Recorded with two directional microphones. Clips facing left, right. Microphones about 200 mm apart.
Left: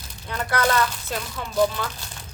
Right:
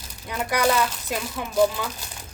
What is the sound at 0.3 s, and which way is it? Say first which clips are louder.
Speech: right 1 dB; 10° right (ahead or behind).